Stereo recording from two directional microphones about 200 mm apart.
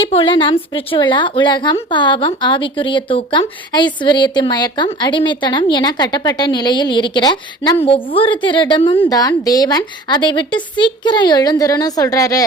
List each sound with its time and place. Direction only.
0.0 s a woman's voice: 25° left (ahead or behind)